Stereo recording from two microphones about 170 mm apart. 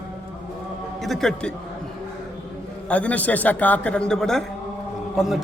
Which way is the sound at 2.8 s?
10° left (ahead or behind).